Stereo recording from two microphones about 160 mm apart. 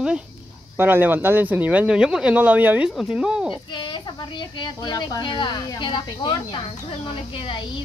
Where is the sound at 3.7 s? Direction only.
30° left (ahead or behind).